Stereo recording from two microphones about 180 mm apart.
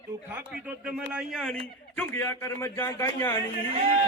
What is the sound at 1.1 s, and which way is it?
Speech, centre (ahead or behind).